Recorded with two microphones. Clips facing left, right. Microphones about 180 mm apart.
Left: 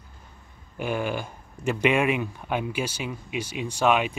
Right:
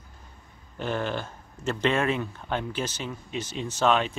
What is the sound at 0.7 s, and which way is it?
Speech, 10° left (ahead or behind).